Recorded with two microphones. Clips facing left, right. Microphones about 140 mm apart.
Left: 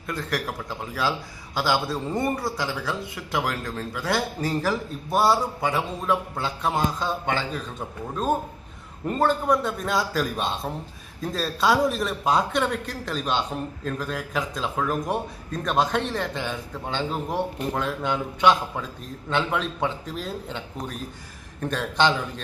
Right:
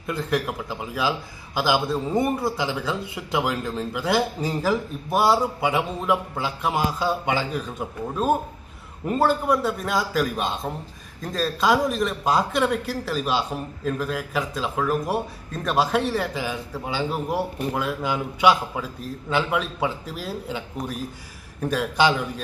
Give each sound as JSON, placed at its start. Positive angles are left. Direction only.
{"t": 0.1, "sound": "a man's voice", "side_deg": -15}